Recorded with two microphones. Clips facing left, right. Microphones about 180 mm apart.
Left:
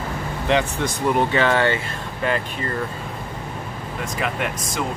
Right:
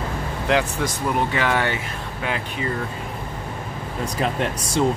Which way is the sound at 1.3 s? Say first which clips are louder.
Left 3 dB; 10° right (ahead or behind).